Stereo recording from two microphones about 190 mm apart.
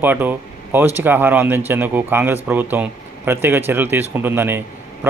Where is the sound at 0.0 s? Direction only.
10° right (ahead or behind).